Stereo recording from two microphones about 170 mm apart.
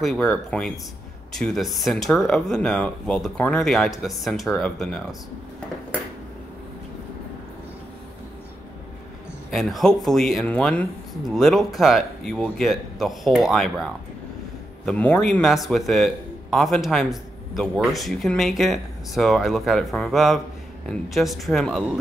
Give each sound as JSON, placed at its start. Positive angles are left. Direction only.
{"t": 0.0, "sound": "a man's voice", "side_deg": 5}
{"t": 9.5, "sound": "a man's voice", "side_deg": 0}
{"t": 14.9, "sound": "a man's voice", "side_deg": 5}